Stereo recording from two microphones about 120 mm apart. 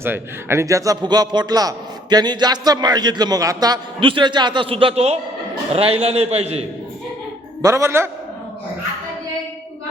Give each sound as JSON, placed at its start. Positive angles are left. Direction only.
{"t": 0.0, "sound": "a man's voice", "side_deg": -20}
{"t": 4.0, "sound": "a man's voice", "side_deg": -40}
{"t": 7.6, "sound": "a man's voice", "side_deg": -25}